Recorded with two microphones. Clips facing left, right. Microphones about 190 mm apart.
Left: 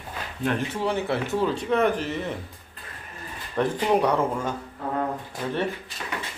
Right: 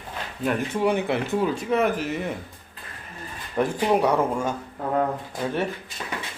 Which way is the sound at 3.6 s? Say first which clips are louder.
Right 1 dB; 10° right (ahead or behind).